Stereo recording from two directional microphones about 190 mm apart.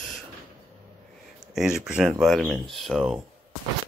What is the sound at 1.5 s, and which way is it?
Speech, centre (ahead or behind).